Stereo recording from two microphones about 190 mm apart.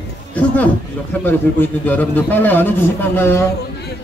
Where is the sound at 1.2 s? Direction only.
10° left (ahead or behind).